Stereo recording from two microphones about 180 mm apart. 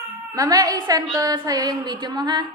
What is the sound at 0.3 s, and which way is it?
Music, 20° right (ahead or behind).